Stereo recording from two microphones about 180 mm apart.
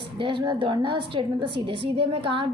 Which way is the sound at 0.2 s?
30° right (ahead or behind).